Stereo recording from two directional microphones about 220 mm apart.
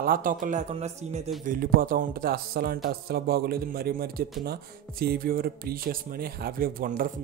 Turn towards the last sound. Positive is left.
turn(degrees=-40)  # may be behind; listen again after turning